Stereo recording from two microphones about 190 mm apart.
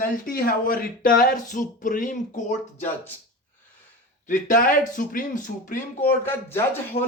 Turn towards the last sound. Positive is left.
turn(degrees=30)  # may be behind; listen again after turning